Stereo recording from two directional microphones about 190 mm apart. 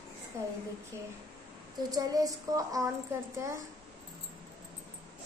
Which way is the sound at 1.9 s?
20° right (ahead or behind).